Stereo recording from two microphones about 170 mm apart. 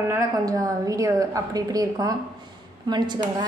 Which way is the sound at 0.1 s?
20° right (ahead or behind).